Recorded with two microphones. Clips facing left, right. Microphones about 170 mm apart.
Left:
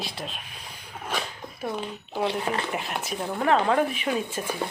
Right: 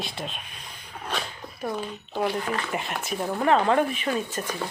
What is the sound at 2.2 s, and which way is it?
Speech, 25° left (ahead or behind).